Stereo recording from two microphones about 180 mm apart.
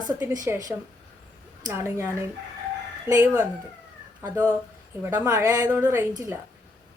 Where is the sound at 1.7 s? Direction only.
15° right (ahead or behind).